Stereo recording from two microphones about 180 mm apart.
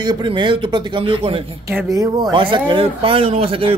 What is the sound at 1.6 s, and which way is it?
A man's voice, 20° right (ahead or behind).